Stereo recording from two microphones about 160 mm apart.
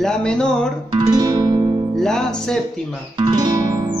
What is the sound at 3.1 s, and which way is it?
Music, 30° right (ahead or behind).